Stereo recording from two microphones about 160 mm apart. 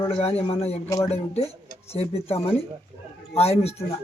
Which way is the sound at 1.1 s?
40° left (ahead or behind).